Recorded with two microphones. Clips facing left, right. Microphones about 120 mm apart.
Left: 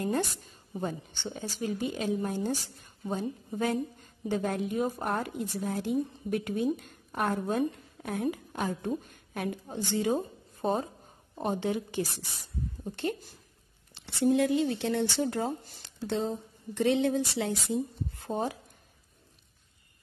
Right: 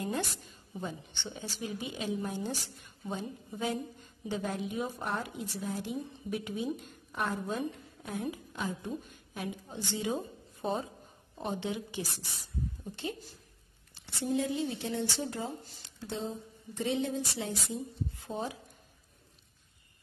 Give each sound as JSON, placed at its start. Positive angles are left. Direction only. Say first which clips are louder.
{"t": 0.0, "sound": "a woman's voice", "louder": "left 5 dB", "side_deg": 45}
{"t": 13.9, "sound": "speech", "louder": "left 7 dB", "side_deg": 70}
{"t": 18.1, "sound": "speech", "louder": "left 8 dB", "side_deg": 55}